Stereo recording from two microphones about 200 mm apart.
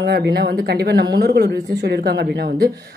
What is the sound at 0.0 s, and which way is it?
A woman's voice, 55° right (ahead or behind).